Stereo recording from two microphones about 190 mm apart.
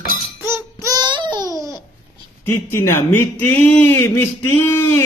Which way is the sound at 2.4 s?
10° left (ahead or behind).